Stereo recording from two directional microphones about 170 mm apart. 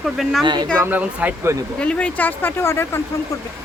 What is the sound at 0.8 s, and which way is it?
Speech, 10° right (ahead or behind).